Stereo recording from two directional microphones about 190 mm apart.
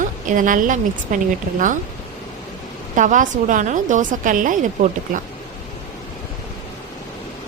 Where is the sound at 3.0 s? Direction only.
40° right (ahead or behind).